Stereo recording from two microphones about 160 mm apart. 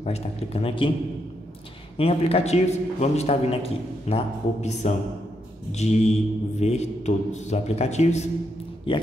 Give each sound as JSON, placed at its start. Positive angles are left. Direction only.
{"t": 0.0, "sound": "a man's voice", "side_deg": 40}
{"t": 2.0, "sound": "a man's voice", "side_deg": 40}
{"t": 8.9, "sound": "a man's voice", "side_deg": 30}